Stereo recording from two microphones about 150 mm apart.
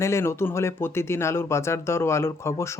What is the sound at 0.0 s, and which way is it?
Speech, 20° left (ahead or behind).